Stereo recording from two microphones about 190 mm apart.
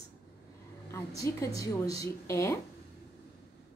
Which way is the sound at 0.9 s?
15° left (ahead or behind).